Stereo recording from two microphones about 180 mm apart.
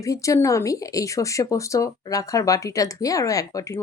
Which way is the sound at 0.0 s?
15° left (ahead or behind).